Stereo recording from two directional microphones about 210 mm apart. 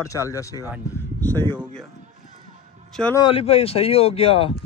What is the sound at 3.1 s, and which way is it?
Speech, 25° left (ahead or behind).